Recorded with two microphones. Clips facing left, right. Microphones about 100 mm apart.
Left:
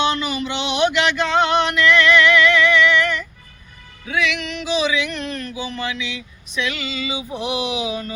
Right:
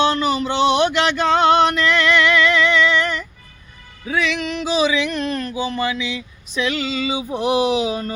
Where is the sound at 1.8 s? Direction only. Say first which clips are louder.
Left 2 dB; 30° right (ahead or behind).